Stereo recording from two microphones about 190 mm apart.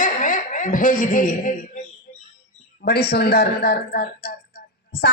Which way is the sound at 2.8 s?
55° left (ahead or behind).